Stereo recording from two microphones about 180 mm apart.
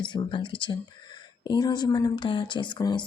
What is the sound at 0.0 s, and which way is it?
Speech, 25° left (ahead or behind).